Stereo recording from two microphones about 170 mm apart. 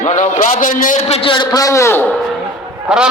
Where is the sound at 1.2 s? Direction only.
30° left (ahead or behind).